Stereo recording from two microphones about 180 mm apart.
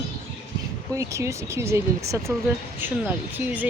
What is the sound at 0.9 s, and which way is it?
Speech, 15° right (ahead or behind).